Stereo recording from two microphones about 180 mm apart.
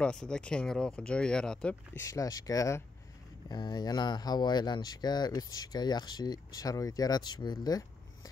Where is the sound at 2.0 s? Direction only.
20° left (ahead or behind).